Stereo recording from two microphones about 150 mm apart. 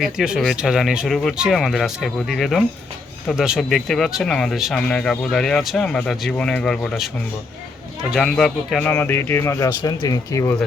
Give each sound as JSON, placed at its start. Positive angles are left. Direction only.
{"t": 0.0, "sound": "speech", "side_deg": 0}
{"t": 8.1, "sound": "speech", "side_deg": 0}
{"t": 8.9, "sound": "speech", "side_deg": 15}